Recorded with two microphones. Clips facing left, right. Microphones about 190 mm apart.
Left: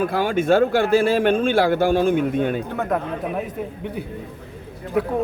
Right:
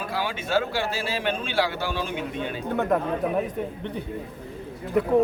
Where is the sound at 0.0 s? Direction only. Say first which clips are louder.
Left 9 dB; 50° left (ahead or behind).